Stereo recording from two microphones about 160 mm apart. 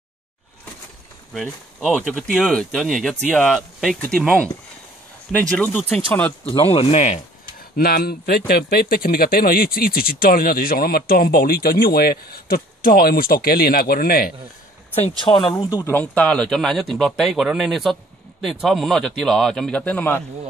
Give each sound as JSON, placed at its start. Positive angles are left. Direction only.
{"t": 1.9, "sound": "speech", "side_deg": 5}
{"t": 6.5, "sound": "speech", "side_deg": 35}
{"t": 7.7, "sound": "speech", "side_deg": 70}
{"t": 15.0, "sound": "speech", "side_deg": 35}
{"t": 15.5, "sound": "speech", "side_deg": 20}